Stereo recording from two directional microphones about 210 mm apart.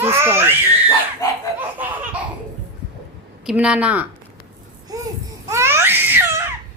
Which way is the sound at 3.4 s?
5° right (ahead or behind).